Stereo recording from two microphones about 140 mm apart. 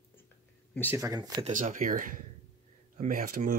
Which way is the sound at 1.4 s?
65° right (ahead or behind).